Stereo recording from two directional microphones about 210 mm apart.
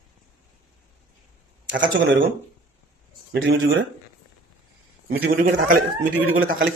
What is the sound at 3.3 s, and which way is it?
Speech, 65° right (ahead or behind).